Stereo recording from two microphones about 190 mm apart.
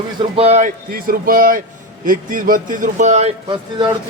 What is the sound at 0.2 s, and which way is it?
Speech, 30° right (ahead or behind).